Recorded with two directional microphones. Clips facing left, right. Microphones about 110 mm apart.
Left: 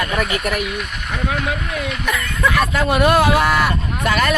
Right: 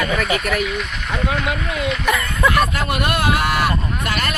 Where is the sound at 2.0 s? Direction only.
5° right (ahead or behind).